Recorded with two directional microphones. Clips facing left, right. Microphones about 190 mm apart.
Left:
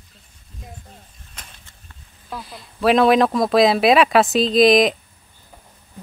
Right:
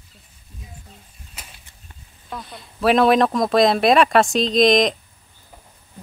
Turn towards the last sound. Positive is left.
turn(degrees=5)  # may be behind; listen again after turning